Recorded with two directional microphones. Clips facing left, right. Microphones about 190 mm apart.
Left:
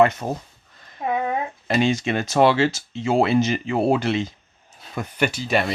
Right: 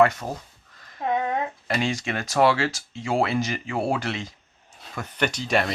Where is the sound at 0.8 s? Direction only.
25° left (ahead or behind).